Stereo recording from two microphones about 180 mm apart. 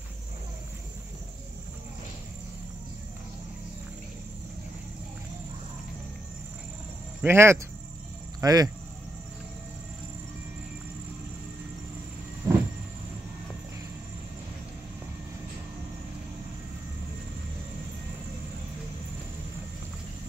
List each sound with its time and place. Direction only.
7.2 s speech: 15° right (ahead or behind)
12.4 s vehicle: 15° right (ahead or behind)